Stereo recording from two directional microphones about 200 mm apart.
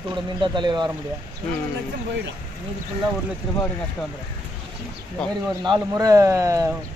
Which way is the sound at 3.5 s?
5° left (ahead or behind).